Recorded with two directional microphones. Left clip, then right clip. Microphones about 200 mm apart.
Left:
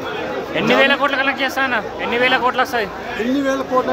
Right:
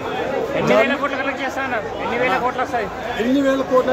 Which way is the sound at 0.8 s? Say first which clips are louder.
Left 5 dB; 40° left (ahead or behind).